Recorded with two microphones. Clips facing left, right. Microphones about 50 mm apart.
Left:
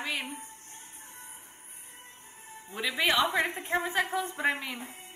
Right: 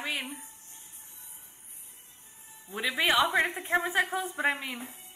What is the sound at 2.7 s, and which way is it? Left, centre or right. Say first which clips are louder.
Music: right 1 dB; centre.